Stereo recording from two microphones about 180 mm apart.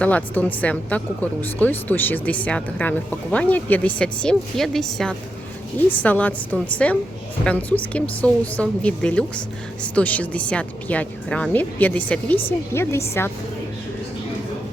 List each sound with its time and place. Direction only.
0.0 s speech: 10° left (ahead or behind)